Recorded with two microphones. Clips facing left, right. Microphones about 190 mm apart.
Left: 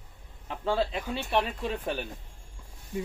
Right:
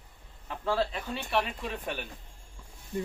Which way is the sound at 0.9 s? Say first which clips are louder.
Left 3 dB; 10° left (ahead or behind).